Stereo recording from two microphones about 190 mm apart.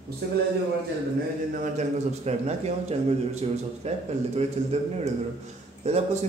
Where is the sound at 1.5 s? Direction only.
35° right (ahead or behind).